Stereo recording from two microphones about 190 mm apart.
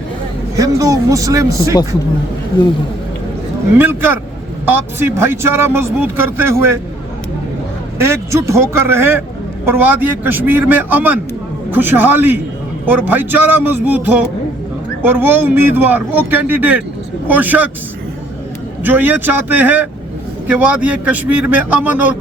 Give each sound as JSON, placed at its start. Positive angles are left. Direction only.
{"t": 0.5, "sound": "speech", "side_deg": -15}
{"t": 3.8, "sound": "speech", "side_deg": -10}
{"t": 7.9, "sound": "speech", "side_deg": -15}
{"t": 18.8, "sound": "speech", "side_deg": -10}